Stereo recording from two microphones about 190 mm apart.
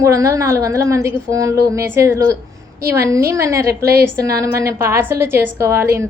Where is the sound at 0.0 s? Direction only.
15° right (ahead or behind).